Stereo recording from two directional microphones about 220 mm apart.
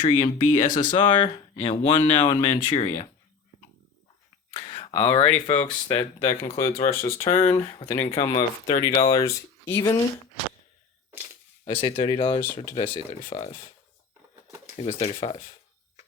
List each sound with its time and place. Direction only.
0.0 s speech: 25° left (ahead or behind)
4.5 s a sound: 20° left (ahead or behind)
5.5 s speech: 15° left (ahead or behind)
6.9 s speech: 10° left (ahead or behind)
11.6 s speech: 25° left (ahead or behind)
14.8 s speech: 25° left (ahead or behind)